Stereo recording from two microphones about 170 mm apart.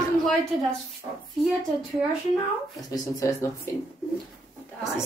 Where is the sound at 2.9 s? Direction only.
20° left (ahead or behind).